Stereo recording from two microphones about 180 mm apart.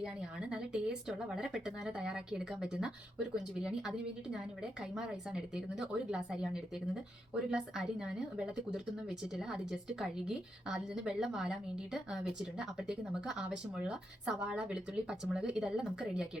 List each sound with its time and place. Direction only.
0.0 s a woman's voice: 5° right (ahead or behind)